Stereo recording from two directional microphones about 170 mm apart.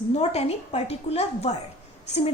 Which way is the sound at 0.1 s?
40° left (ahead or behind).